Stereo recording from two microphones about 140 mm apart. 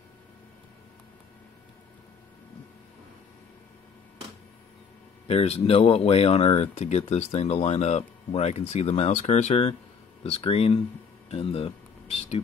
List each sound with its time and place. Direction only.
5.3 s speech: 45° left (ahead or behind)